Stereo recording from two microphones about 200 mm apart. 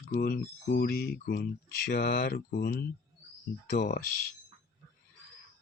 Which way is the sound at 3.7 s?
50° left (ahead or behind).